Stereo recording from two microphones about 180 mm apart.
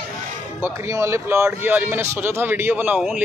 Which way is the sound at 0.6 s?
15° right (ahead or behind).